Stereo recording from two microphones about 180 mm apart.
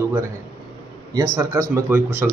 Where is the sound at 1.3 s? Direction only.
15° right (ahead or behind).